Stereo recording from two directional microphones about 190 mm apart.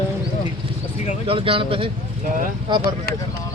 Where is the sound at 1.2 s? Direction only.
30° right (ahead or behind).